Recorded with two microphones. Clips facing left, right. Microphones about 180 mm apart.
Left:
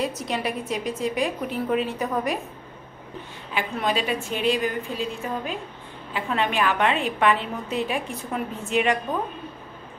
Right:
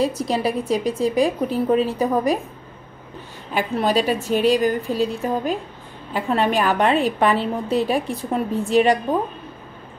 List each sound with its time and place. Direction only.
0.0 s a woman's voice: 35° right (ahead or behind)
3.5 s a woman's voice: 40° right (ahead or behind)